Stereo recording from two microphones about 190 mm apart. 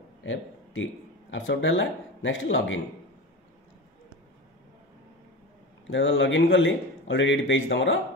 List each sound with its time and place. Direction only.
0.2 s a sound: 85° left
1.3 s speech: 85° left
5.9 s a man's voice: 85° left; by 8.0 s 70° left (ahead or behind)